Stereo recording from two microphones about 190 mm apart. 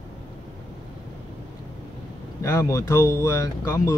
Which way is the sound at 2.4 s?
15° left (ahead or behind).